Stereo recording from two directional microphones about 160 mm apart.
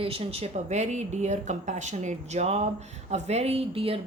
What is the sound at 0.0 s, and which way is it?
Speech, 35° right (ahead or behind).